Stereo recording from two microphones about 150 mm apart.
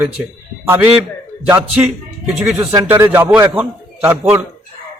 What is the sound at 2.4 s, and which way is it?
A man's voice, 15° right (ahead or behind).